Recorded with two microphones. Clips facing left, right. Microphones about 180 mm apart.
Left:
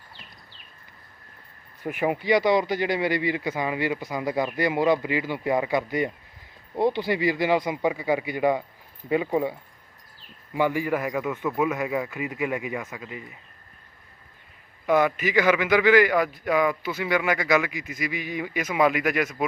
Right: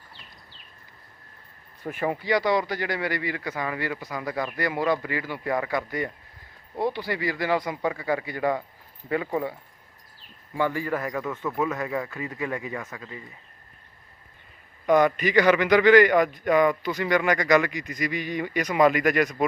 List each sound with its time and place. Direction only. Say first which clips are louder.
1.8 s a man's voice: left 2 dB; 15° left (ahead or behind)
14.8 s a man's voice: right 2 dB; 5° left (ahead or behind)